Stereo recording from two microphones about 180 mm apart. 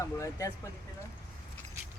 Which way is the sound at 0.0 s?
15° left (ahead or behind).